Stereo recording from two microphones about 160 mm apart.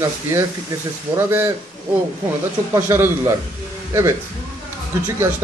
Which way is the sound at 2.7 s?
15° right (ahead or behind).